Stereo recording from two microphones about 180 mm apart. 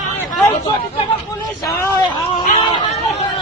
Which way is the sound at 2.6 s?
30° left (ahead or behind).